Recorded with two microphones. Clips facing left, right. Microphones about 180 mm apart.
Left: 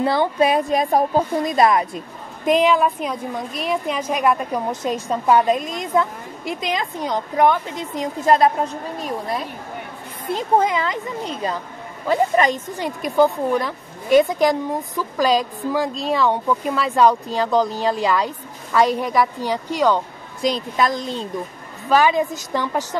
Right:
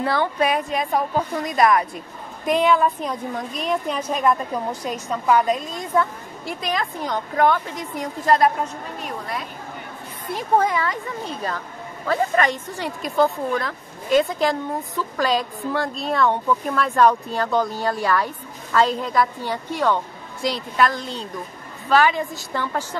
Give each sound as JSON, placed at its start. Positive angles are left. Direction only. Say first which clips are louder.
{"t": 0.0, "sound": "a woman's voice", "louder": "left 3 dB", "side_deg": 25}
{"t": 1.3, "sound": "a woman's voice", "louder": "right 1 dB", "side_deg": 25}
{"t": 4.8, "sound": "a woman's voice", "louder": "left 3 dB", "side_deg": 30}
{"t": 10.2, "sound": "a woman's voice", "louder": "left 2 dB", "side_deg": 20}